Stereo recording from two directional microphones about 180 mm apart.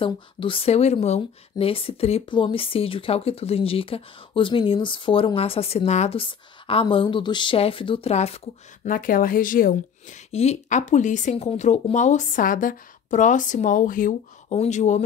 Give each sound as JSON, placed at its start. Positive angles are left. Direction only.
{"t": 0.0, "sound": "speech", "side_deg": 30}
{"t": 8.8, "sound": "a woman's voice", "side_deg": 50}